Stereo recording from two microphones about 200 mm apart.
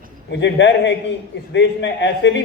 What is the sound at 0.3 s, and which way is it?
A man's voice, 60° left (ahead or behind).